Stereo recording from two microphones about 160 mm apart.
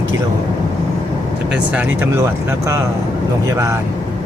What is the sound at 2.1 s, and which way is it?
Speech, 20° right (ahead or behind).